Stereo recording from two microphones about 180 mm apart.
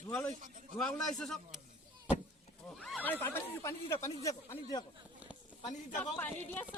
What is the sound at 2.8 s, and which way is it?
Speech, 5° left (ahead or behind).